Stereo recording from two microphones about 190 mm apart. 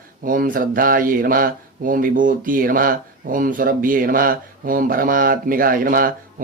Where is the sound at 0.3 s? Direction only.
45° right (ahead or behind).